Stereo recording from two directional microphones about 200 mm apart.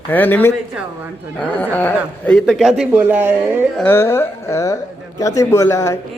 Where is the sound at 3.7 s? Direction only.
10° left (ahead or behind).